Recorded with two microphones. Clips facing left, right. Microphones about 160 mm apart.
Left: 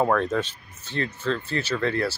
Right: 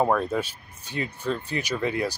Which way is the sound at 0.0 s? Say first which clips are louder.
Left 1 dB; 10° right (ahead or behind).